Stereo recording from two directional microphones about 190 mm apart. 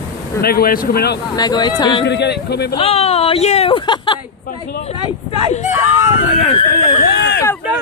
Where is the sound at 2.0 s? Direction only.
65° left (ahead or behind).